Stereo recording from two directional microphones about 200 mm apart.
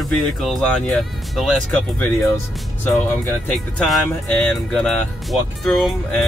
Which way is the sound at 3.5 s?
Centre (ahead or behind).